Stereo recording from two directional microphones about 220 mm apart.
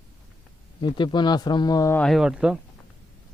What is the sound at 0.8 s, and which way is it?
A man's voice, 20° left (ahead or behind).